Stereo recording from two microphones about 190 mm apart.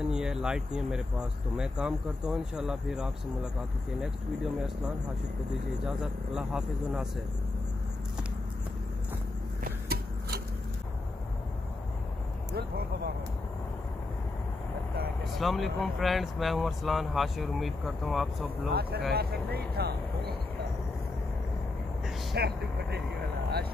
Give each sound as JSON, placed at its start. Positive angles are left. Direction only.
{"t": 0.0, "sound": "speech", "side_deg": -5}
{"t": 5.9, "sound": "speech", "side_deg": -5}
{"t": 9.7, "sound": "vehicle", "side_deg": -50}
{"t": 12.5, "sound": "a sound", "side_deg": -55}
{"t": 15.3, "sound": "speech", "side_deg": 0}
{"t": 18.7, "sound": "speech", "side_deg": -55}
{"t": 22.3, "sound": "speech", "side_deg": -60}